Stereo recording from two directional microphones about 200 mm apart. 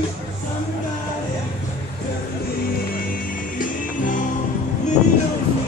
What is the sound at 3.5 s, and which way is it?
Music, 40° left (ahead or behind).